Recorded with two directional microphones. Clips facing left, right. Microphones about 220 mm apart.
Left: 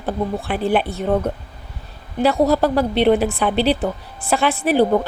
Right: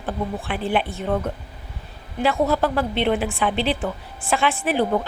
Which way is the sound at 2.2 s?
35° left (ahead or behind).